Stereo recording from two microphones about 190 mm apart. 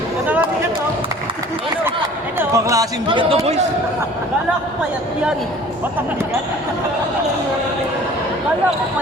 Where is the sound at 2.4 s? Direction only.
15° right (ahead or behind).